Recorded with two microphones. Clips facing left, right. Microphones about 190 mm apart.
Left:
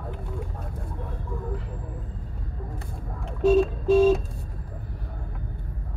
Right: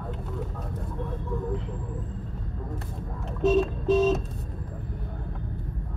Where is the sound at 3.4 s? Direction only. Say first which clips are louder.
Left 3 dB; centre (ahead or behind).